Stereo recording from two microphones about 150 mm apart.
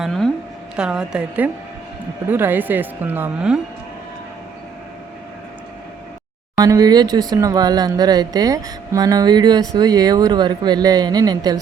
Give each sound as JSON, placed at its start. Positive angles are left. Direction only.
{"t": 0.0, "sound": "a woman's voice", "side_deg": 0}
{"t": 6.6, "sound": "speech", "side_deg": -25}